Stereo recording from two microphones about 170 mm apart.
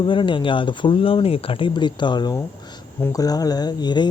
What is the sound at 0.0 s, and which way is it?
Speech, 30° left (ahead or behind).